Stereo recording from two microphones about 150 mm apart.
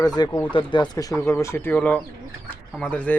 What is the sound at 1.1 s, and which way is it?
Speech, 20° left (ahead or behind).